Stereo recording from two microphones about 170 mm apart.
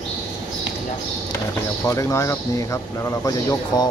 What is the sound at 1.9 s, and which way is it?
A man's voice, 20° left (ahead or behind).